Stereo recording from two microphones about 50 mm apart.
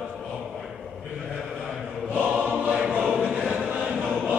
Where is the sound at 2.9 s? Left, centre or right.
Right.